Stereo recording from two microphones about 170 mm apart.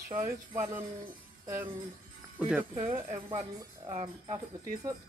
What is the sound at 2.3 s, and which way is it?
Speech, 10° right (ahead or behind).